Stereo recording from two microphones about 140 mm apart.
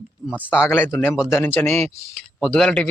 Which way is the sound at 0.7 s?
15° left (ahead or behind).